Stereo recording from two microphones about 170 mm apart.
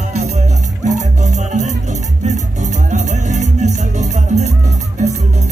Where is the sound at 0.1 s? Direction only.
40° right (ahead or behind).